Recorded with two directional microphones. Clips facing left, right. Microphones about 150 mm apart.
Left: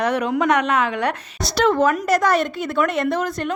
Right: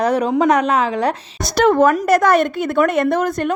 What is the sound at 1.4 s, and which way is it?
A woman's voice, 50° right (ahead or behind).